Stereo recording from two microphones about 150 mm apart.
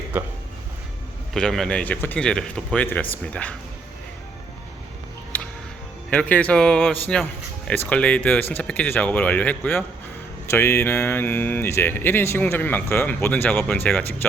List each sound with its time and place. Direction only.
1.3 s speech: 5° left (ahead or behind)
5.3 s music: 10° left (ahead or behind)
6.1 s speech: 10° left (ahead or behind)